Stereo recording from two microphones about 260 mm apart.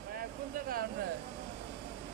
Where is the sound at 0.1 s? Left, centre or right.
Right.